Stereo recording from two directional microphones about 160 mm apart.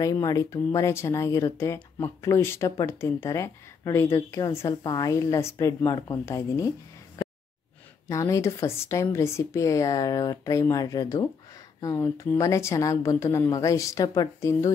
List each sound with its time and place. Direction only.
0.0 s speech: 20° left (ahead or behind)
8.1 s speech: 20° left (ahead or behind)